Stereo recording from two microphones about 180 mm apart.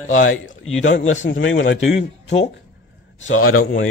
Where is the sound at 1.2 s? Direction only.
90° left.